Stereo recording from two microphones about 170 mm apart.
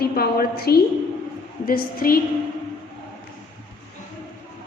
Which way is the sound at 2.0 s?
60° left (ahead or behind).